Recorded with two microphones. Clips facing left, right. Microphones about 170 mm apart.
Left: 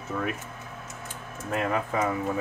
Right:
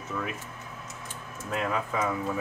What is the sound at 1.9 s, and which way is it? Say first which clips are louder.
Speech: left 2 dB; 35° left (ahead or behind).